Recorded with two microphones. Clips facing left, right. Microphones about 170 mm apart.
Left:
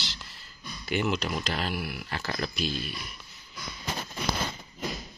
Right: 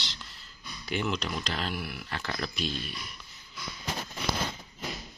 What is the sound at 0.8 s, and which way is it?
Speech, 5° left (ahead or behind).